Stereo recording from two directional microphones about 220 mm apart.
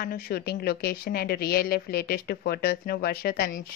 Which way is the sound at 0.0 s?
45° left (ahead or behind).